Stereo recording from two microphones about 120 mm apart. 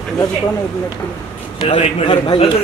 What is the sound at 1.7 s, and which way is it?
Speech, 50° left (ahead or behind).